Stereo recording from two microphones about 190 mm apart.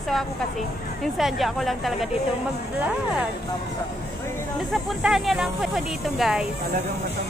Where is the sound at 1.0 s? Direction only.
Centre (ahead or behind).